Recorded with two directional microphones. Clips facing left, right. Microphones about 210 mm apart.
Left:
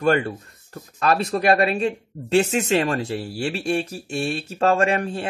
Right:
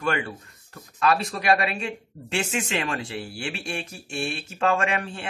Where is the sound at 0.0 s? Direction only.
40° left (ahead or behind).